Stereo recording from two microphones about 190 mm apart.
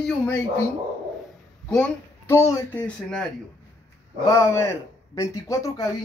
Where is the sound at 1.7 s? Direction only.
10° left (ahead or behind).